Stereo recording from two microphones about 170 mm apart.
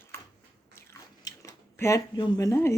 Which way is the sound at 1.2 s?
20° left (ahead or behind).